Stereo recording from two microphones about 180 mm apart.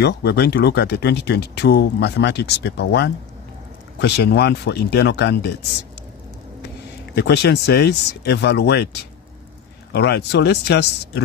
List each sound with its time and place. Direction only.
0.0 s speech: 65° left (ahead or behind)
7.2 s speech: 65° left (ahead or behind)
9.9 s speech: 65° left (ahead or behind)